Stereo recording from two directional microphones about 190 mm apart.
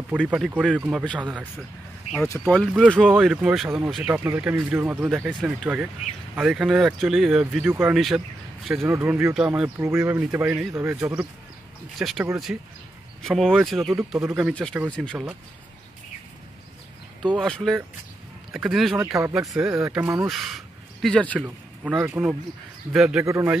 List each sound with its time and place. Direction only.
0.1 s speech: centre (ahead or behind)
2.4 s speech: 5° left (ahead or behind)
13.2 s speech: centre (ahead or behind)
13.8 s speech: 15° right (ahead or behind)
14.3 s speech: centre (ahead or behind)
17.4 s speech: centre (ahead or behind)
19.1 s speech: 15° right (ahead or behind)
20.2 s speech: centre (ahead or behind)
21.8 s speech: 10° right (ahead or behind)